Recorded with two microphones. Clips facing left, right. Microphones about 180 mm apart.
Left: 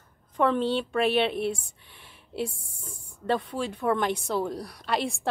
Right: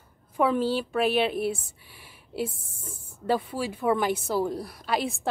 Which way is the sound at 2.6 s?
25° right (ahead or behind).